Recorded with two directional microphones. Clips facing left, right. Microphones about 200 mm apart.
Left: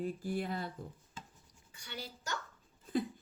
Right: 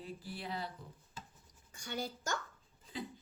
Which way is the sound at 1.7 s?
45° right (ahead or behind).